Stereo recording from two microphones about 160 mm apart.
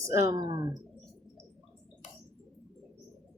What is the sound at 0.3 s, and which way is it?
Speech, 25° right (ahead or behind).